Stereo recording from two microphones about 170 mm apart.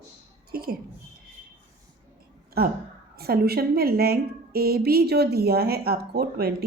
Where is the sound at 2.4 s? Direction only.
65° right (ahead or behind).